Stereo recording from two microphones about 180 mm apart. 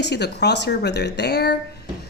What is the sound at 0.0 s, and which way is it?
Speech, 70° left (ahead or behind).